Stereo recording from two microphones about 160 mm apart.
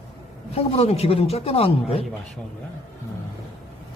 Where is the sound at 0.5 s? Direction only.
40° left (ahead or behind).